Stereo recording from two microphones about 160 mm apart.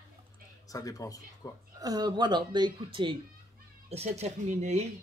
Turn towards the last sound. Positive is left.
turn(degrees=-45)  # may be behind; listen again after turning